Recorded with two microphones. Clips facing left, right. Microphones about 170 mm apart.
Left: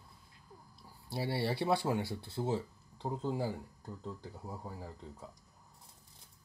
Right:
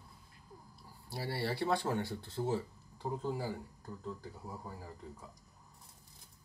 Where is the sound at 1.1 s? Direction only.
15° left (ahead or behind).